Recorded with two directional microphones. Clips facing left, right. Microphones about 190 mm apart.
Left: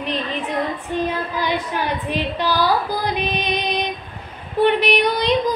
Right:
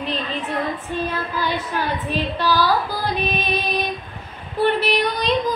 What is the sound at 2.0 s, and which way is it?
Female singing, 15° left (ahead or behind).